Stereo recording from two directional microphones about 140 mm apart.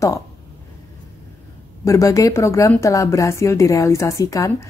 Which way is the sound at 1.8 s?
25° left (ahead or behind).